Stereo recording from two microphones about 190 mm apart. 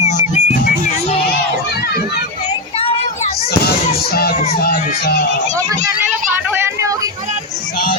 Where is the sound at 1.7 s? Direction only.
55° left (ahead or behind).